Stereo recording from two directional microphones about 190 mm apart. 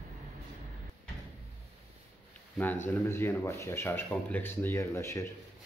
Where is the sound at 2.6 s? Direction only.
10° left (ahead or behind).